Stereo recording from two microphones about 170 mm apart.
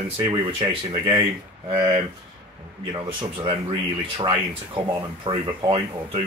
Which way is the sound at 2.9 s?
30° right (ahead or behind).